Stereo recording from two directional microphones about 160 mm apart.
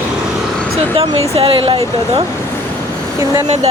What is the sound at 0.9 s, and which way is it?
Speech, 35° right (ahead or behind).